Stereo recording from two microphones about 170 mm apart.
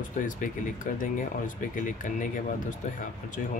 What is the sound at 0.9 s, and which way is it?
Speech, 50° left (ahead or behind).